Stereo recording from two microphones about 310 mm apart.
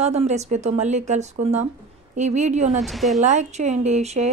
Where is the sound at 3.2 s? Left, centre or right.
Right.